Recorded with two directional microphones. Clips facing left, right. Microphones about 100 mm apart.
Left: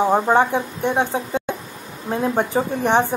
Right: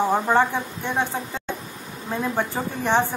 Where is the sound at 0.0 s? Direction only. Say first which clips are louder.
Left 3 dB; 15° left (ahead or behind).